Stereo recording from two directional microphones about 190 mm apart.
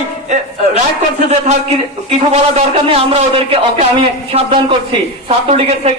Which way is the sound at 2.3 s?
35° right (ahead or behind).